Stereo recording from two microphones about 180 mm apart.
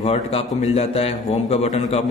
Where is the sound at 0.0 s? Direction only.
35° left (ahead or behind).